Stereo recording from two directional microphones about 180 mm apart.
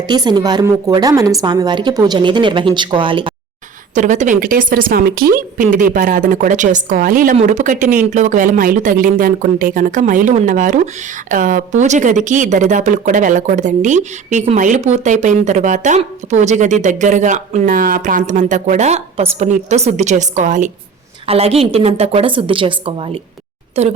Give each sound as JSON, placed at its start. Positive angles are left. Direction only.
{"t": 0.1, "sound": "a woman's voice", "side_deg": -25}
{"t": 3.9, "sound": "speech", "side_deg": -45}